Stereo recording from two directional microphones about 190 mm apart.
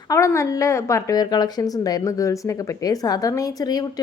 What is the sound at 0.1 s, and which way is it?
A woman's voice, 15° left (ahead or behind).